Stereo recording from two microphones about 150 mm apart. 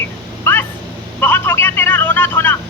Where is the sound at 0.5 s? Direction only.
15° left (ahead or behind).